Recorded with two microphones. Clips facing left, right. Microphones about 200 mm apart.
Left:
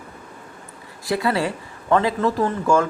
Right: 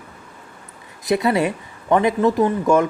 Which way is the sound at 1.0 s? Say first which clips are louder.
Right 3 dB; 20° right (ahead or behind).